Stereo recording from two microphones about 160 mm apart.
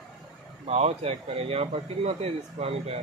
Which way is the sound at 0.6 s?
40° right (ahead or behind).